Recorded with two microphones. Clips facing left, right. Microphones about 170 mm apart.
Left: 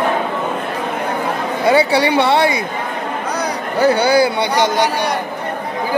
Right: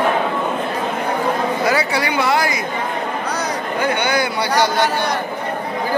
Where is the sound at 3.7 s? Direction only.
35° left (ahead or behind).